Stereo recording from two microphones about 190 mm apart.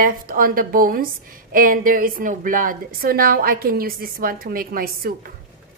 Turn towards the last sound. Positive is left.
turn(degrees=-50)  # may be behind; listen again after turning